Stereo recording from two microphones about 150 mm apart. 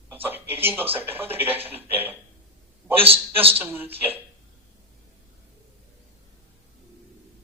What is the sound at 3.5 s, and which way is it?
Speech, 15° right (ahead or behind).